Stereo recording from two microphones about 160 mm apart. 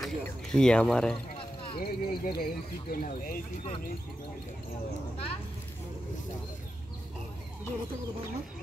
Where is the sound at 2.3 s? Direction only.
65° left (ahead or behind).